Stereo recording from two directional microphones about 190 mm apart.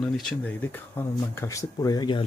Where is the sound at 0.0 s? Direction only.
5° left (ahead or behind).